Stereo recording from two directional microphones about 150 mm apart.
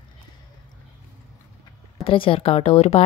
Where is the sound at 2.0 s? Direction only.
35° left (ahead or behind).